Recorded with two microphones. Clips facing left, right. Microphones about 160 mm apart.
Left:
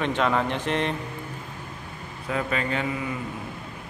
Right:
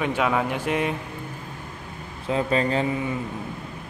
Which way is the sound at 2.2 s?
30° right (ahead or behind).